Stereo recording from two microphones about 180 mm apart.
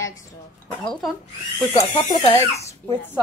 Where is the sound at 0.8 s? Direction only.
Centre (ahead or behind).